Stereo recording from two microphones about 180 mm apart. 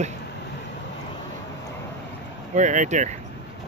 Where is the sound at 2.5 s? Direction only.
45° right (ahead or behind).